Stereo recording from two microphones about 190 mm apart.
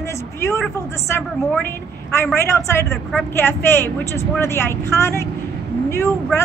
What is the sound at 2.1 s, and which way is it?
A woman's voice, 15° left (ahead or behind).